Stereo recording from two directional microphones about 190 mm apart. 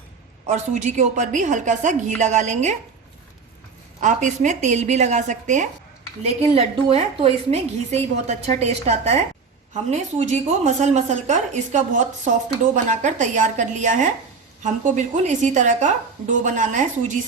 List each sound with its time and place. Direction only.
0.4 s a woman's voice: 40° right (ahead or behind)
4.0 s a woman's voice: 40° right (ahead or behind)
10.2 s a woman's voice: 35° right (ahead or behind)